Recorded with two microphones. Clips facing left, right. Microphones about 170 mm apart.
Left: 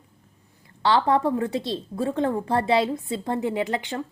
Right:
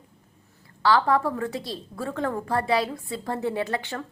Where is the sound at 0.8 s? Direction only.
20° left (ahead or behind).